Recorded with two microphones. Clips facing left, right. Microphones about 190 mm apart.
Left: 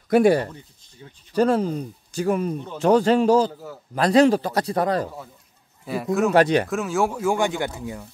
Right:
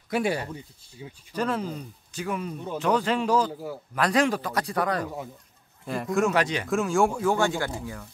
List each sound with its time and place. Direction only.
0.1 s speech: 50° left (ahead or behind); by 5.1 s 30° left (ahead or behind)
5.9 s speech: 5° left (ahead or behind)
6.4 s speech: 55° left (ahead or behind)
6.7 s speech: centre (ahead or behind); by 8.1 s 20° left (ahead or behind)